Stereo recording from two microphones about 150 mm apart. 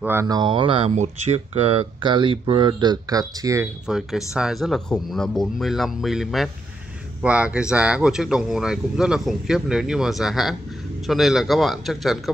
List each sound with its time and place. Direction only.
0.0 s speech: 15° right (ahead or behind)
0.3 s speech: 30° right (ahead or behind)
0.9 s speech: 45° right (ahead or behind); by 3.6 s 25° right (ahead or behind)
3.8 s speech: 5° right (ahead or behind)